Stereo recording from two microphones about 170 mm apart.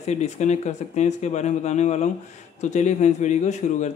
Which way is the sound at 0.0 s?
45° left (ahead or behind).